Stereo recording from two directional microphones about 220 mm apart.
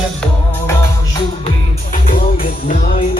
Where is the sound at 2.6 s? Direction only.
40° left (ahead or behind).